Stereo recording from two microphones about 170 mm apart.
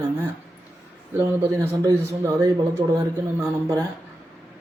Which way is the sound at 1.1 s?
15° right (ahead or behind).